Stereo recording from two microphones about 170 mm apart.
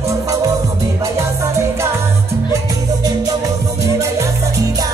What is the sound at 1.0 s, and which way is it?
Music, 15° right (ahead or behind).